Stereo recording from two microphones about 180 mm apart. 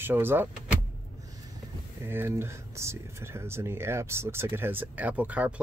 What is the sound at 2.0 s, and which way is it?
Speech, 15° right (ahead or behind).